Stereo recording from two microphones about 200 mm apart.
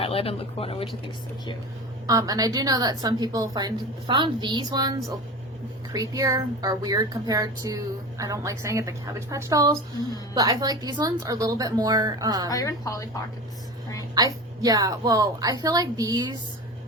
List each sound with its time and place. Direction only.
0.0 s speech: 30° left (ahead or behind)
2.0 s a woman's voice: 20° right (ahead or behind)
12.5 s a woman's voice: 15° left (ahead or behind)
14.2 s a woman's voice: 20° right (ahead or behind)